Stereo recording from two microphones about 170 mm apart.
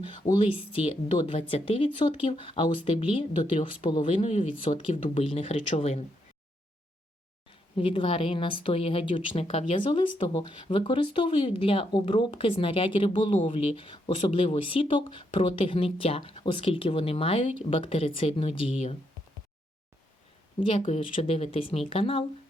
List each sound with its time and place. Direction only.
0.0 s speech: 30° left (ahead or behind)
7.8 s speech: 30° left (ahead or behind)
20.6 s speech: 30° left (ahead or behind)